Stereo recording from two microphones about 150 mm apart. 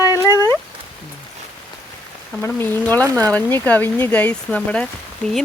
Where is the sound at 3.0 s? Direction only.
20° right (ahead or behind).